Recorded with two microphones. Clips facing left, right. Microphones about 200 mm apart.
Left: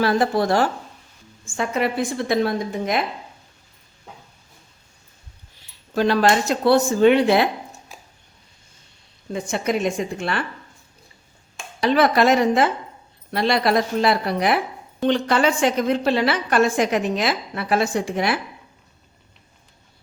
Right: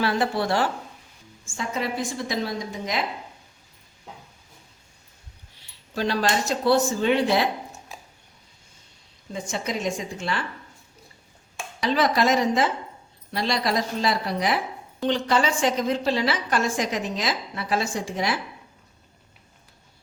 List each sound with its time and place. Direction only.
0.0 s speech: 45° left (ahead or behind)
1.5 s a woman's voice: 60° left (ahead or behind)
5.9 s a woman's voice: 55° left (ahead or behind)
9.3 s a woman's voice: 60° left (ahead or behind)
11.8 s a woman's voice: 60° left (ahead or behind)